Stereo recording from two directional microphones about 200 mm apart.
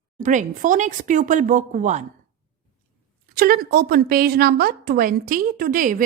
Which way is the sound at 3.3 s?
45° right (ahead or behind).